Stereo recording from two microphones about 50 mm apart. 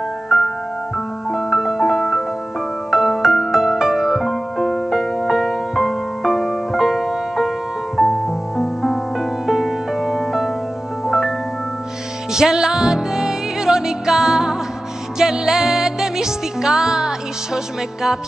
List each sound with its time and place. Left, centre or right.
0.9 s music: centre
4.3 s music: centre